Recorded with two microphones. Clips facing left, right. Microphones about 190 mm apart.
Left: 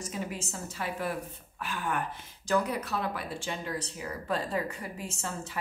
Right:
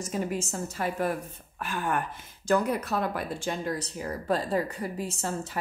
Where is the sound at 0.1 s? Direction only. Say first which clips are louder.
Right 9 dB; 45° right (ahead or behind).